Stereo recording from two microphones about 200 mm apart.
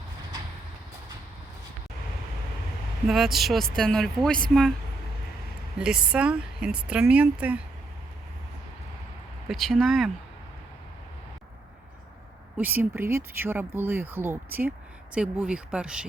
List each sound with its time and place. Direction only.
3.1 s speech: centre (ahead or behind)
5.8 s speech: 5° right (ahead or behind)
9.5 s speech: centre (ahead or behind)
12.5 s speech: 10° right (ahead or behind)